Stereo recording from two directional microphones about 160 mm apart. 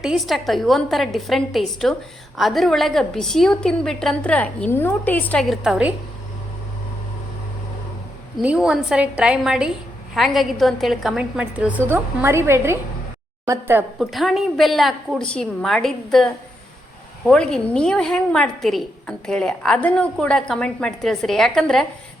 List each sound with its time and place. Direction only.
0.0 s a woman's voice: centre (ahead or behind)
8.4 s a woman's voice: 5° right (ahead or behind)
14.0 s a woman's voice: centre (ahead or behind)